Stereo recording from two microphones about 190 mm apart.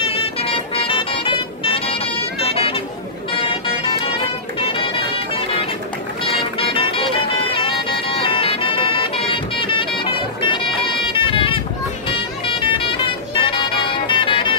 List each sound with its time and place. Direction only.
0.0 s music: 30° left (ahead or behind)
3.3 s vehicle: 30° left (ahead or behind)
4.6 s music: 25° left (ahead or behind)